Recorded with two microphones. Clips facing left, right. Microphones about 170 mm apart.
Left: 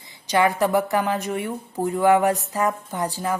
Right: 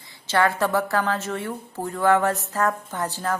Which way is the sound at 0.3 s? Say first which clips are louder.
Left 2 dB; 15° left (ahead or behind).